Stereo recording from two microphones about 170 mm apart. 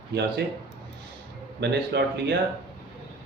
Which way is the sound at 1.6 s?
85° right.